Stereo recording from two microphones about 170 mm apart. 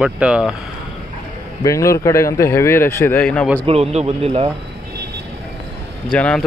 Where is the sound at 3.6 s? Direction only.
35° right (ahead or behind).